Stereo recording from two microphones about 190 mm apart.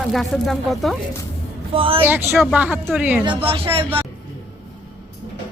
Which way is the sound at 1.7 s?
30° right (ahead or behind).